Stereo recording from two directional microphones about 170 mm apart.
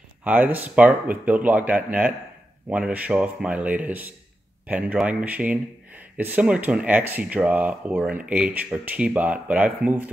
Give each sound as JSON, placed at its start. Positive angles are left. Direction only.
{"t": 0.2, "sound": "speech", "side_deg": -10}